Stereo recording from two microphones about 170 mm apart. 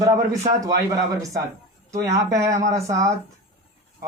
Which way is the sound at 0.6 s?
20° right (ahead or behind).